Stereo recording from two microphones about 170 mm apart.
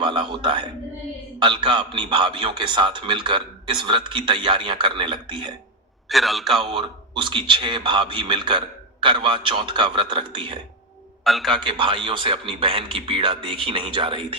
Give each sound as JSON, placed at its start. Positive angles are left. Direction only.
{"t": 0.0, "sound": "a sound", "side_deg": -30}
{"t": 1.4, "sound": "a man's voice", "side_deg": -30}
{"t": 6.1, "sound": "a man's voice", "side_deg": 0}
{"t": 6.7, "sound": "a man's voice", "side_deg": -30}
{"t": 11.2, "sound": "a man's voice", "side_deg": 0}
{"t": 11.6, "sound": "speech", "side_deg": -30}